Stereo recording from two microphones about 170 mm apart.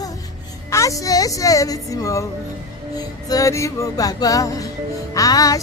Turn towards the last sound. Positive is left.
turn(degrees=20)  # may be behind; listen again after turning